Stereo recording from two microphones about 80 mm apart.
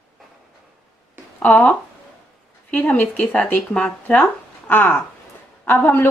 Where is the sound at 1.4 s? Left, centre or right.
Centre.